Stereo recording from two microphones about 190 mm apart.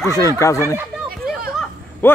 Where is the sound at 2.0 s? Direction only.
10° left (ahead or behind).